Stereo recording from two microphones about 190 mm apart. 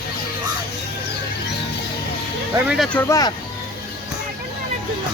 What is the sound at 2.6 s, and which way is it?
Speech, centre (ahead or behind).